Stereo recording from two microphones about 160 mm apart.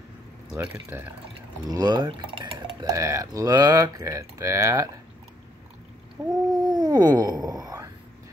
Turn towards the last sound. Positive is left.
turn(degrees=-25)  # may be behind; listen again after turning